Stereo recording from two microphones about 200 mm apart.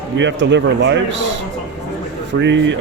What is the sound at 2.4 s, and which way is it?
Speech, 65° right (ahead or behind).